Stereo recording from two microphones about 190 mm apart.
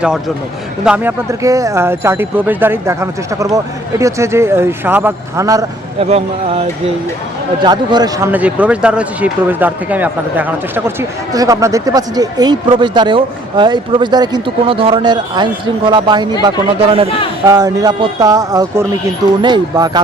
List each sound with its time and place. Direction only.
0.9 s speech: 10° right (ahead or behind)
6.0 s speech: 30° right (ahead or behind)
8.3 s speech: 5° right (ahead or behind); by 16.2 s 25° right (ahead or behind)
17.4 s speech: 20° right (ahead or behind)